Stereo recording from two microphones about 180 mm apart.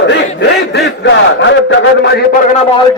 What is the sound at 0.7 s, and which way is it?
A man's voice, 90° left.